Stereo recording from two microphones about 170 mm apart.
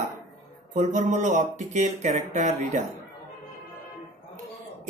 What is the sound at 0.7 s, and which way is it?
Speech, 45° right (ahead or behind).